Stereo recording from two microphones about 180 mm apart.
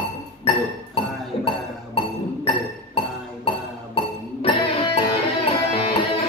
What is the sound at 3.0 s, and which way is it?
Music, 30° left (ahead or behind).